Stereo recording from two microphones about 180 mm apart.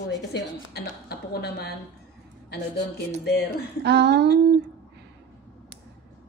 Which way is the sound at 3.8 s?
70° right (ahead or behind).